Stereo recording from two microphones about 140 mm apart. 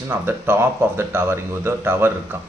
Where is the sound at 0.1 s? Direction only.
15° right (ahead or behind).